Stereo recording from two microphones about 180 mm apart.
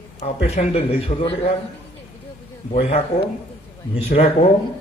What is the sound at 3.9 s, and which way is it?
Speech, 30° left (ahead or behind).